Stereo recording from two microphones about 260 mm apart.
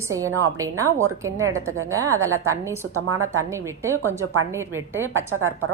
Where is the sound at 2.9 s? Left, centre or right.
Right.